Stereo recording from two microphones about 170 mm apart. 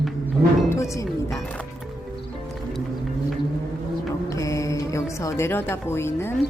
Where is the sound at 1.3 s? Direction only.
10° left (ahead or behind).